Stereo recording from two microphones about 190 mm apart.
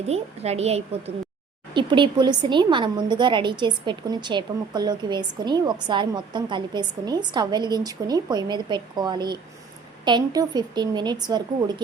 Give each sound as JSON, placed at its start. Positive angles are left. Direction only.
{"t": 0.1, "sound": "a woman's voice", "side_deg": -35}